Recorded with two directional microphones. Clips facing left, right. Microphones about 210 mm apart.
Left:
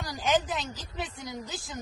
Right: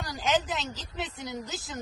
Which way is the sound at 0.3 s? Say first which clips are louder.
Left 1 dB; 10° left (ahead or behind).